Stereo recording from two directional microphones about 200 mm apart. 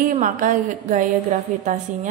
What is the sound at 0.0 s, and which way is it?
A woman's voice, 40° right (ahead or behind).